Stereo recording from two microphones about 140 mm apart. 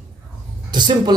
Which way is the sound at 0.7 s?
30° right (ahead or behind).